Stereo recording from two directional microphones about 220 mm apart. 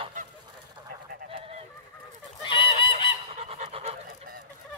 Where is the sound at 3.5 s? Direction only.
25° right (ahead or behind).